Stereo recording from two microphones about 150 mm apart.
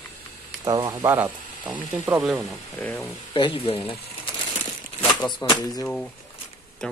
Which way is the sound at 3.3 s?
35° left (ahead or behind).